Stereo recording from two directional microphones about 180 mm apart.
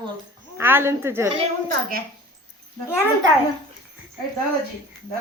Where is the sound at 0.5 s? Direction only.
10° right (ahead or behind).